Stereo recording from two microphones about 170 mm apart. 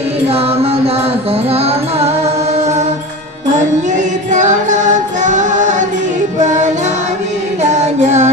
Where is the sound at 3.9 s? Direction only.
45° right (ahead or behind).